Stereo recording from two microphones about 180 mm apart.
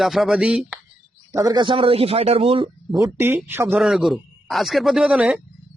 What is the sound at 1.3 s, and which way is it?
A man's voice, 20° right (ahead or behind).